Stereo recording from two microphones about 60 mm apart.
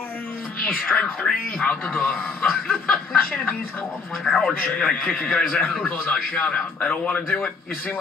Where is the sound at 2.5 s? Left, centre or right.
Centre.